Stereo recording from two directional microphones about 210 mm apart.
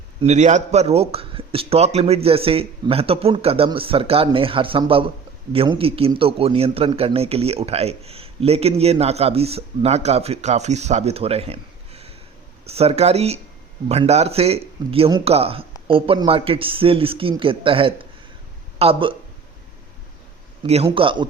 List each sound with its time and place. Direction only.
0.2 s speech: 35° right (ahead or behind)
20.7 s speech: 30° right (ahead or behind)